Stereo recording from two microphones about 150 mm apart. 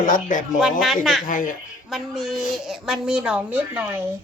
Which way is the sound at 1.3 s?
65° left (ahead or behind).